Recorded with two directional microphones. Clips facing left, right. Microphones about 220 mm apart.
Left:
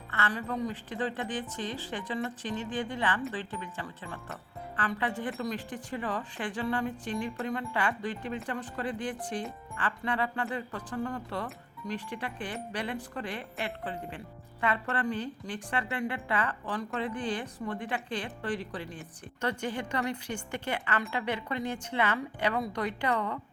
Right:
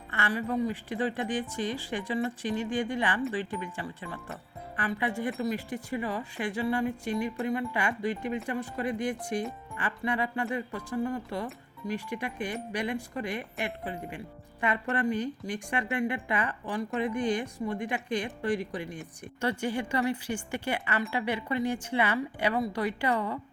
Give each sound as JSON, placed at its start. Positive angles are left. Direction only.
{"t": 0.1, "sound": "a woman's voice", "side_deg": -10}